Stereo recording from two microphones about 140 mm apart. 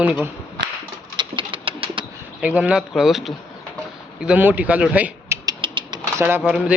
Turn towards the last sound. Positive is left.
turn(degrees=-5)  # may be behind; listen again after turning